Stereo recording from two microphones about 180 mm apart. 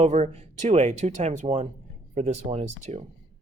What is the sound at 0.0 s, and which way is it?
Speech, 40° right (ahead or behind).